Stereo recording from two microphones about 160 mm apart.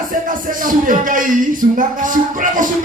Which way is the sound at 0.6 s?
55° right (ahead or behind).